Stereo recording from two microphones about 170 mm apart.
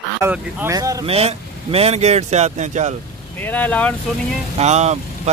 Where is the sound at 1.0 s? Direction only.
35° right (ahead or behind).